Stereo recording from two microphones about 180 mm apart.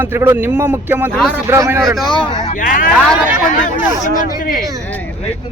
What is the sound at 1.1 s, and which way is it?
Speech, 5° left (ahead or behind).